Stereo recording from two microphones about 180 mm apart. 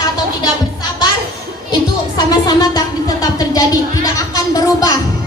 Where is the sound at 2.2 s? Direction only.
20° left (ahead or behind).